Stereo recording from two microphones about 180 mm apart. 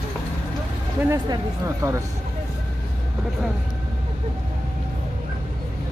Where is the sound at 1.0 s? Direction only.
15° right (ahead or behind).